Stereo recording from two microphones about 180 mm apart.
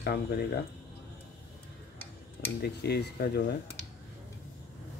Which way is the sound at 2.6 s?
65° left (ahead or behind).